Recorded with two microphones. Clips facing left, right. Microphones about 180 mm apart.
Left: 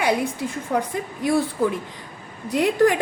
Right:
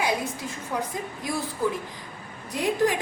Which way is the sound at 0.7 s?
60° left (ahead or behind).